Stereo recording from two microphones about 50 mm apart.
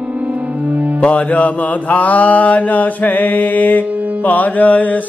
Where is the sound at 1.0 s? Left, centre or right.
Left.